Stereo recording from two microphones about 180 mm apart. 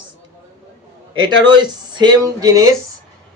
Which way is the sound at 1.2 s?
25° right (ahead or behind).